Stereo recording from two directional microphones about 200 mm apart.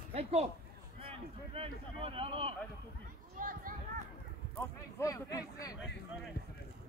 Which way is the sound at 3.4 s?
45° right (ahead or behind).